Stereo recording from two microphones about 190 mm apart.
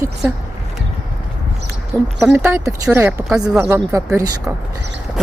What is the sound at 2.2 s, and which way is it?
A woman's voice, 10° right (ahead or behind).